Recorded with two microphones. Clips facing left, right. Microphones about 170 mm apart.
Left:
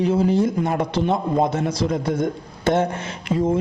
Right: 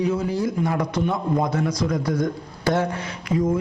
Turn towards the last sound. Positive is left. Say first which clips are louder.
# left 1 dB
turn(degrees=25)  # may be behind; listen again after turning